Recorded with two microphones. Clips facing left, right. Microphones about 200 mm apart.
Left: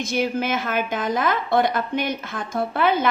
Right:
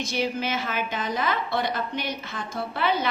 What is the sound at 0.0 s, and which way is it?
A woman's voice, 50° left (ahead or behind).